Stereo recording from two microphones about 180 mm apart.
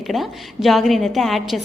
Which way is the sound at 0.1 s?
Centre (ahead or behind).